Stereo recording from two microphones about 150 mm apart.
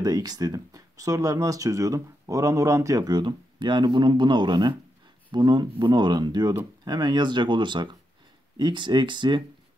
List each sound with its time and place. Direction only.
0.0 s speech: 25° right (ahead or behind)